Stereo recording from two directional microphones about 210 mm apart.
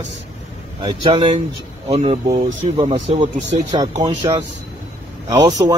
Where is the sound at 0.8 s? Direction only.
25° right (ahead or behind).